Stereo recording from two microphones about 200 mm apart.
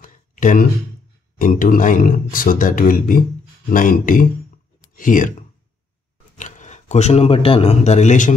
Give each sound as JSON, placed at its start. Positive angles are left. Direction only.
{"t": 0.0, "sound": "a sound", "side_deg": 40}
{"t": 1.4, "sound": "speech", "side_deg": 40}
{"t": 6.3, "sound": "speech", "side_deg": 40}